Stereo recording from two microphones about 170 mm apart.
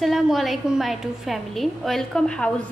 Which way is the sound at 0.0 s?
Centre (ahead or behind).